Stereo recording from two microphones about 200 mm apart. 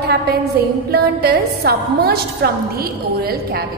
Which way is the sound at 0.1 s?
50° right (ahead or behind).